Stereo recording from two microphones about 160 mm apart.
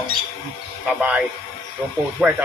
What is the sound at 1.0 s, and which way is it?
A man's voice, 5° right (ahead or behind).